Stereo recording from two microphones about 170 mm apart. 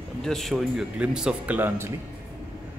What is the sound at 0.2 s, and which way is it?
Speech, centre (ahead or behind).